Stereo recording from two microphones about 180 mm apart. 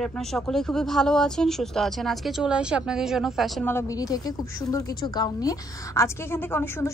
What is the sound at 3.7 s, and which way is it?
A woman's voice, 15° left (ahead or behind).